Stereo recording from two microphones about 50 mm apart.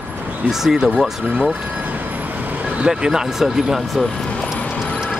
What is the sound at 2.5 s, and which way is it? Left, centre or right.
Vehicle, right.